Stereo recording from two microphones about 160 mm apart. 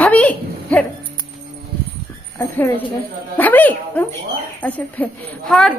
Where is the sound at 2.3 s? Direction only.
15° left (ahead or behind).